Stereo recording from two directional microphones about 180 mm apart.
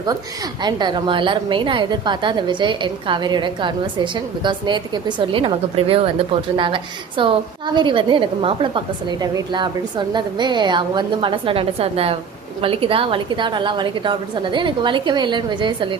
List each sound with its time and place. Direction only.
0.6 s a woman's voice: 25° right (ahead or behind)